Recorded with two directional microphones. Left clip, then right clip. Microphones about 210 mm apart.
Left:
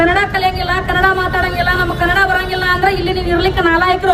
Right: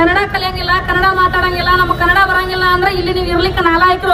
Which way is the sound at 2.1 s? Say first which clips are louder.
Right 2 dB; 5° left (ahead or behind).